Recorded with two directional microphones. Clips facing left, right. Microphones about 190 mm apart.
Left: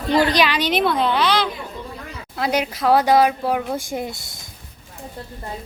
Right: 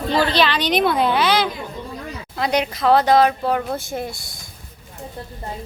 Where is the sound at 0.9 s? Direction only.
10° right (ahead or behind).